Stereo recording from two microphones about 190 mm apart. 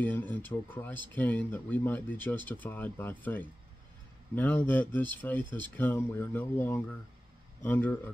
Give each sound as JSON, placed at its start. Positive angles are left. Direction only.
{"t": 0.0, "sound": "speech", "side_deg": 10}